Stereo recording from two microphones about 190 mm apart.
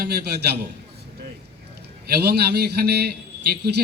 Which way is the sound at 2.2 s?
55° right (ahead or behind).